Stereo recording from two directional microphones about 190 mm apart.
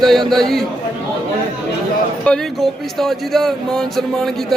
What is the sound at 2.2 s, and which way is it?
A man's voice, 5° left (ahead or behind).